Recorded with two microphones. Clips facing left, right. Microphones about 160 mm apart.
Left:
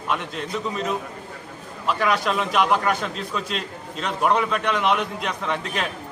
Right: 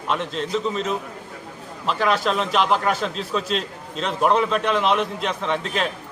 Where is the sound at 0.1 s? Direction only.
5° left (ahead or behind).